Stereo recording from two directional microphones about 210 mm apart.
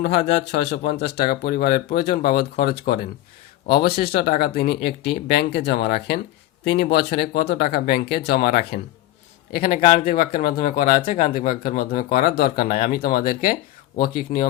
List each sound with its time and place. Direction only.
0.0 s speech: 45° left (ahead or behind)